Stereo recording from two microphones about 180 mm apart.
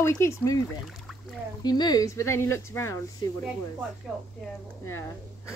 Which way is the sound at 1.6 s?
20° left (ahead or behind).